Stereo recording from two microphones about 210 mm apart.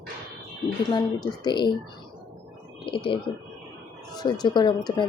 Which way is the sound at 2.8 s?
25° left (ahead or behind).